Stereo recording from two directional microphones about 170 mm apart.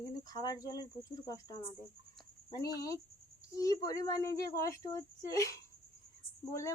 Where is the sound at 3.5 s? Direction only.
20° left (ahead or behind).